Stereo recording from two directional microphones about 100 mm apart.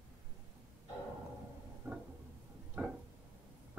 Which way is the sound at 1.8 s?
25° right (ahead or behind).